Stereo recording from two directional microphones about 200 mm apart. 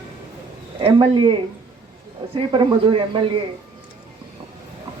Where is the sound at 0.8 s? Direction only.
25° right (ahead or behind).